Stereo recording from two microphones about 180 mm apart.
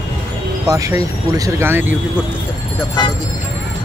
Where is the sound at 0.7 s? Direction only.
20° right (ahead or behind).